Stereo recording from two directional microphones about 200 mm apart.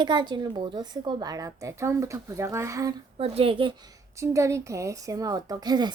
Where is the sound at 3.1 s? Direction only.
30° right (ahead or behind).